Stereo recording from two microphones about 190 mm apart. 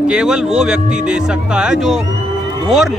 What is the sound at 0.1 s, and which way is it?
Speech, 5° right (ahead or behind).